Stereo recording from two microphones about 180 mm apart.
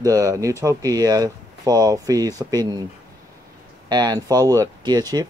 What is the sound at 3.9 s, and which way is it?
Speech, 20° right (ahead or behind).